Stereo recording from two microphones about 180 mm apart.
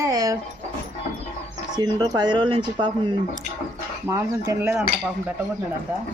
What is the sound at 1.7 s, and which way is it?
Speech, 25° right (ahead or behind).